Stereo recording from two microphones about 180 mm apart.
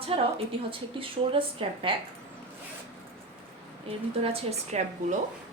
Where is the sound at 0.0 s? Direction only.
30° right (ahead or behind).